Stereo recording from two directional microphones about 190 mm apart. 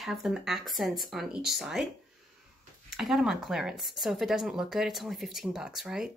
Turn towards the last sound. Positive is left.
turn(degrees=0)  # may be behind; listen again after turning